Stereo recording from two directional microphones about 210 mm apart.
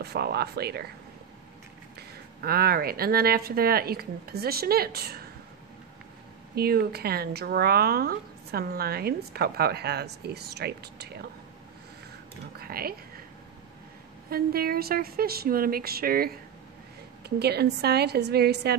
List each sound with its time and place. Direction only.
0.0 s speech: 50° right (ahead or behind)
2.0 s speech: 45° right (ahead or behind)
6.5 s speech: 45° right (ahead or behind)
12.5 s a sound: 45° right (ahead or behind)
14.3 s speech: 45° right (ahead or behind)
17.4 s speech: 50° right (ahead or behind)